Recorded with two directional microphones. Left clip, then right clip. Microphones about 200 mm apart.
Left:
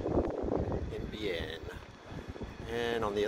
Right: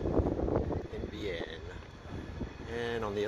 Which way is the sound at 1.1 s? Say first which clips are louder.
Left 3 dB; 15° left (ahead or behind).